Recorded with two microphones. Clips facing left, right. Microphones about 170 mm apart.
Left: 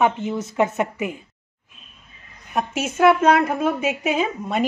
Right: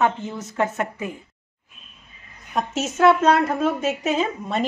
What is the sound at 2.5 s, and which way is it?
Speech, 10° left (ahead or behind).